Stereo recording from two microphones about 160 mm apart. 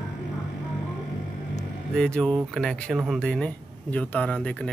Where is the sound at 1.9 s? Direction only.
5° left (ahead or behind).